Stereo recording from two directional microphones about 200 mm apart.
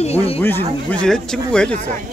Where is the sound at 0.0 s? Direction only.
30° left (ahead or behind).